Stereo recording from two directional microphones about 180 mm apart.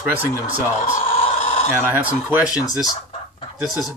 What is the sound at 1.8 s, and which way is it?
Speech, 10° right (ahead or behind).